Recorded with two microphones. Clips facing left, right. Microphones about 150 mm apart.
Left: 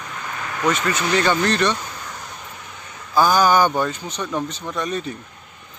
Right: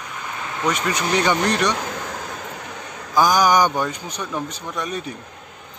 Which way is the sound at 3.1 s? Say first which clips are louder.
Even; 15° right (ahead or behind).